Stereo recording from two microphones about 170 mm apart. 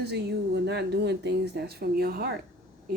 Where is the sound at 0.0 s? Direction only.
75° right (ahead or behind).